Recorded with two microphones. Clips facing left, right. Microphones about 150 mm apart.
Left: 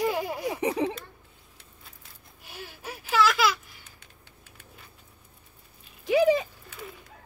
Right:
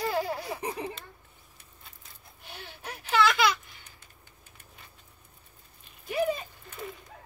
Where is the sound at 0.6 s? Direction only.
75° left (ahead or behind).